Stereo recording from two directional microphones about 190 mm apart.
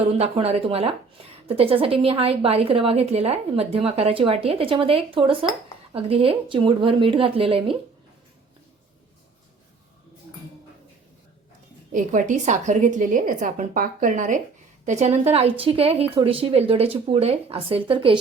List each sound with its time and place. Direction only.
0.0 s a woman's voice: 30° right (ahead or behind)
11.9 s a woman's voice: 45° right (ahead or behind); by 18.2 s 25° right (ahead or behind)